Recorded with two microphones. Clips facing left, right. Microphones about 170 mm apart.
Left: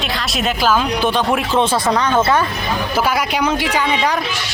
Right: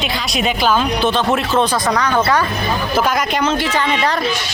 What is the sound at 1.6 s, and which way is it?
Speech, 25° left (ahead or behind).